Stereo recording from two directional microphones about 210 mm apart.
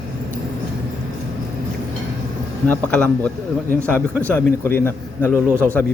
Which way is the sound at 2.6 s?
5° left (ahead or behind).